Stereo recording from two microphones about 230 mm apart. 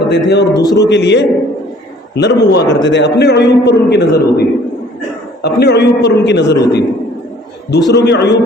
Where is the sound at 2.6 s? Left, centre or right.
Centre.